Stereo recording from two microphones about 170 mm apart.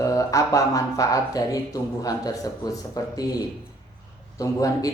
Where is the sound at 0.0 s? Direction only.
20° left (ahead or behind).